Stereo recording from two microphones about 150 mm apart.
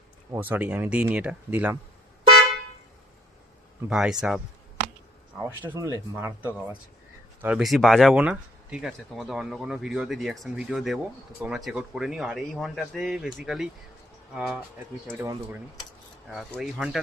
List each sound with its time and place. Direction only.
0.3 s speech: 10° right (ahead or behind)
3.8 s speech: 5° right (ahead or behind)
5.4 s speech: 15° right (ahead or behind)
16.3 s speech: centre (ahead or behind)